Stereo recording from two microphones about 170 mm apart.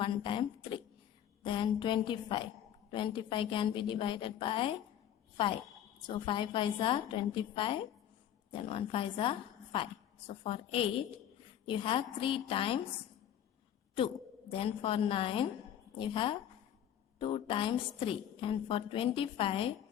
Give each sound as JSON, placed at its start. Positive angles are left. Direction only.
{"t": 0.0, "sound": "a sound", "side_deg": 30}
{"t": 1.5, "sound": "a woman's voice", "side_deg": 30}
{"t": 6.1, "sound": "a woman's voice", "side_deg": 30}
{"t": 14.5, "sound": "a woman's voice", "side_deg": 35}